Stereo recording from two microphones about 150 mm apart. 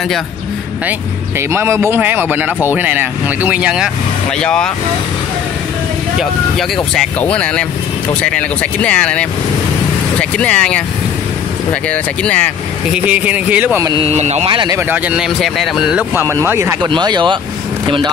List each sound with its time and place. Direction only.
1.5 s speech: 15° right (ahead or behind)
4.4 s speech: 5° left (ahead or behind)
7.0 s speech: 10° left (ahead or behind)
10.3 s speech: 10° left (ahead or behind)
11.9 s speech: 10° left (ahead or behind)
12.9 s speech: 10° right (ahead or behind)
13.8 s speech: 35° right (ahead or behind)
14.1 s speech: 50° right (ahead or behind)
14.5 s speech: 30° right (ahead or behind)
14.8 s speech: 10° right (ahead or behind)
16.9 s speech: 30° right (ahead or behind)